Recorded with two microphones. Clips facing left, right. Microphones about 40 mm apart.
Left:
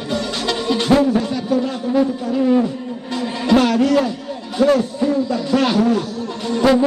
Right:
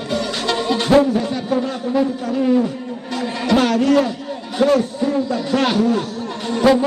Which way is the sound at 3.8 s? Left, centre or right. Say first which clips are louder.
Right 1 dB; right.